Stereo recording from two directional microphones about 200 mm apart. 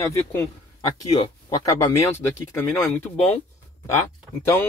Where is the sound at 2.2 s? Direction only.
10° left (ahead or behind).